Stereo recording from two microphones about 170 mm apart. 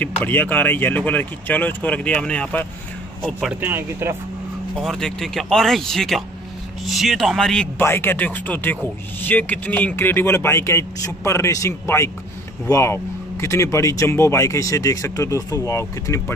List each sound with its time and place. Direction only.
0.0 s speech: 10° left (ahead or behind)
3.6 s speech: 15° right (ahead or behind)
4.7 s speech: 5° left (ahead or behind)